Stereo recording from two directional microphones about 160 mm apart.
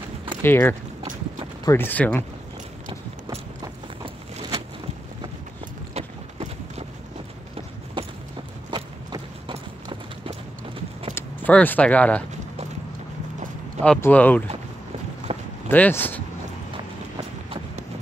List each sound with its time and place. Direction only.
0.4 s speech: 15° left (ahead or behind)
5.9 s clip-clop: 40° right (ahead or behind)
8.0 s clip-clop: 30° right (ahead or behind)
11.1 s speech: 10° left (ahead or behind)
13.8 s speech: 10° left (ahead or behind)
15.3 s a sound: 35° right (ahead or behind)
15.7 s speech: 10° left (ahead or behind)
16.7 s clip-clop: 30° right (ahead or behind)